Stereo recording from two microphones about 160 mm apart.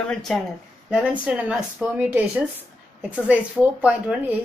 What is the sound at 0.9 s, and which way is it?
Speech, 10° right (ahead or behind).